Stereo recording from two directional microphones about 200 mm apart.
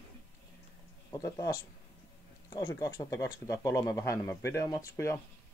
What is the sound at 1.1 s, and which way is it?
Speech, 15° left (ahead or behind).